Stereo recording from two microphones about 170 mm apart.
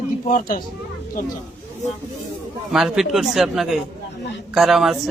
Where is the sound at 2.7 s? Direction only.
Centre (ahead or behind).